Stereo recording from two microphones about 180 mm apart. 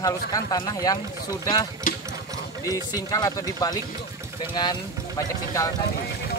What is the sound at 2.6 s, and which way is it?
Speech, 20° left (ahead or behind).